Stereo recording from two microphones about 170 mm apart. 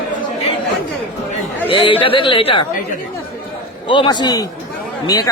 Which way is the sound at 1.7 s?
30° left (ahead or behind).